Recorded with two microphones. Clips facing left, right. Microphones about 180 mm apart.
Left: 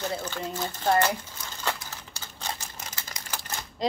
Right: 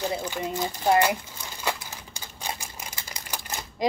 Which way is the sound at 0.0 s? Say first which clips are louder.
Right 3 dB; 15° right (ahead or behind).